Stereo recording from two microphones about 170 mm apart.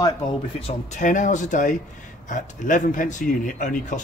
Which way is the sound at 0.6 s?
40° left (ahead or behind).